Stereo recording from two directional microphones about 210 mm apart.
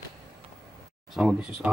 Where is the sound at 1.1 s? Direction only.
5° right (ahead or behind).